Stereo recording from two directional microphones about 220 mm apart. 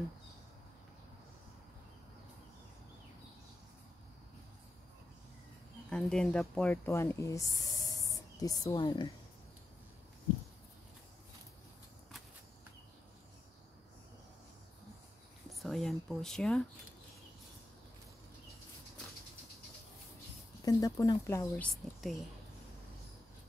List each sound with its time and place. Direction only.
5.9 s speech: 5° left (ahead or behind); by 9.1 s 20° left (ahead or behind)
15.5 s speech: centre (ahead or behind)
20.6 s a woman's voice: 15° left (ahead or behind)